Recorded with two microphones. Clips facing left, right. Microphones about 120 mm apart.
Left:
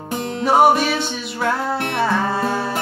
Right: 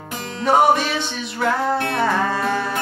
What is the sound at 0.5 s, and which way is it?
Music, 5° left (ahead or behind).